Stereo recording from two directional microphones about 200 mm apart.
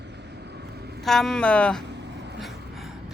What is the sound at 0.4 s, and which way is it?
Vehicle, 55° right (ahead or behind).